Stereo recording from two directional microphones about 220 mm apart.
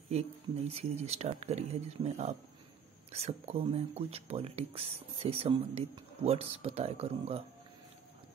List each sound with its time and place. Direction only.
0.7 s speech: 25° right (ahead or behind)